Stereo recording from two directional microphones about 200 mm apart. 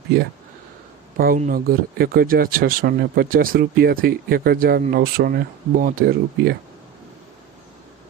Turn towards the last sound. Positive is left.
turn(degrees=-50)  # may be behind; listen again after turning